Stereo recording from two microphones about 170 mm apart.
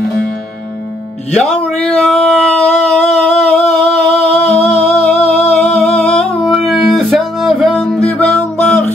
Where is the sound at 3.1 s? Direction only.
40° left (ahead or behind).